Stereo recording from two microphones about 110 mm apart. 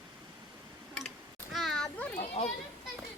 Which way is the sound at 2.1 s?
70° left (ahead or behind).